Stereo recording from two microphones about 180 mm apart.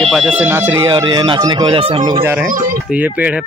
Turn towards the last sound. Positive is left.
turn(degrees=-10)  # may be behind; listen again after turning